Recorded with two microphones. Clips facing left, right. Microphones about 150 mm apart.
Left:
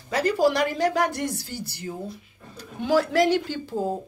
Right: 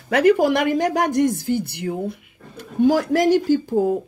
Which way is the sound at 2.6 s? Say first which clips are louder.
Right 5 dB; 50° right (ahead or behind).